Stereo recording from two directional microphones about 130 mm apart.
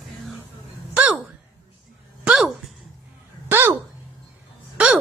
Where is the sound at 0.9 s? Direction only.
10° right (ahead or behind).